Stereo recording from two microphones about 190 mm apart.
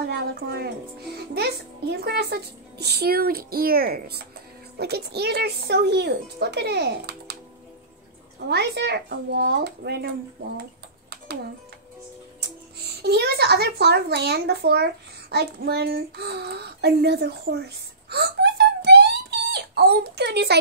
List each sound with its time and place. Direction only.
0.1 s a woman's voice: 60° right (ahead or behind)
8.5 s a child's voice: 60° right (ahead or behind)
10.6 s a sound: 60° right (ahead or behind)
12.8 s a child's voice: 60° right (ahead or behind)
18.1 s wail: 60° right (ahead or behind)